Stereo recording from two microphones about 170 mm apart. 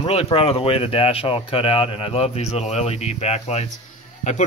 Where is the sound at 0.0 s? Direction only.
35° left (ahead or behind).